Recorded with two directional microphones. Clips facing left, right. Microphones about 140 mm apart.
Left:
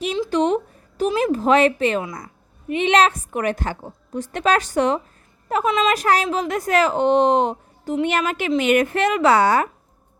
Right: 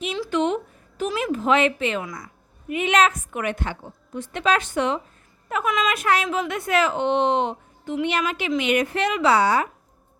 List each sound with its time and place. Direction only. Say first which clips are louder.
0.3 s a woman's voice: left 2 dB; 35° left (ahead or behind)
2.6 s a woman's voice: left 3 dB; 30° left (ahead or behind); by 9.6 s 50° left (ahead or behind)